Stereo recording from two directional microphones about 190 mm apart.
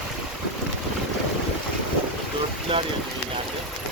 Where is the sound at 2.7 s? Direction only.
30° right (ahead or behind).